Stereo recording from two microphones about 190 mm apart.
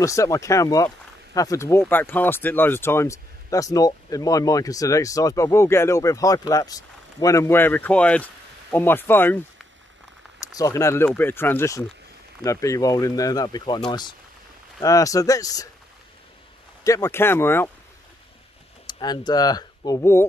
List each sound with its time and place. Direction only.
0.0 s speech: 15° left (ahead or behind)
10.4 s speech: 20° left (ahead or behind)
16.8 s speech: 15° left (ahead or behind)
18.9 s speech: 20° left (ahead or behind)